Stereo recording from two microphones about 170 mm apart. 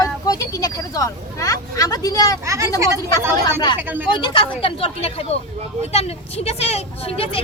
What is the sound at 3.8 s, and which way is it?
Speech, 10° right (ahead or behind).